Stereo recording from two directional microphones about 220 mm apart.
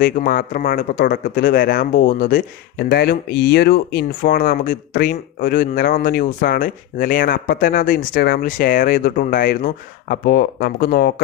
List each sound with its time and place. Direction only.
0.0 s speech: 40° left (ahead or behind)